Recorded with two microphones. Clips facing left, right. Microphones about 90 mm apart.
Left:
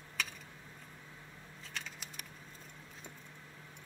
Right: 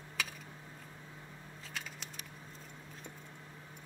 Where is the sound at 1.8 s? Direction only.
5° right (ahead or behind).